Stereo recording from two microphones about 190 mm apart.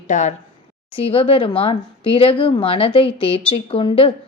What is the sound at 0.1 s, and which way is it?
Speech, 40° left (ahead or behind).